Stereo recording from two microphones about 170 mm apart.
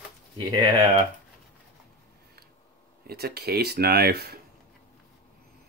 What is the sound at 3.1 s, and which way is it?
Speech, 70° right (ahead or behind).